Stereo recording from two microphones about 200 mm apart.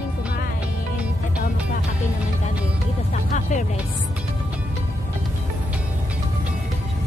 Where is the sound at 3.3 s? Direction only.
35° left (ahead or behind).